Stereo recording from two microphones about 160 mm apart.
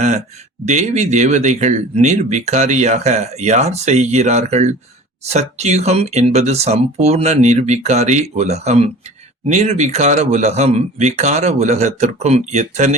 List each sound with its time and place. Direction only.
0.6 s speech: 45° right (ahead or behind)